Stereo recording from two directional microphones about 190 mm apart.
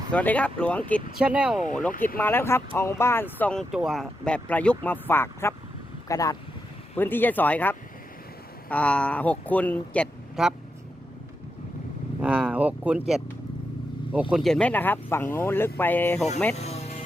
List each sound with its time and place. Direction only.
0.1 s speech: 5° left (ahead or behind)
1.2 s speech: 5° right (ahead or behind)
1.9 s speech: 45° left (ahead or behind)
2.1 s speech: 10° left (ahead or behind)
12.2 s speech: 5° right (ahead or behind); by 16.2 s 10° left (ahead or behind)
16.6 s music: 35° left (ahead or behind)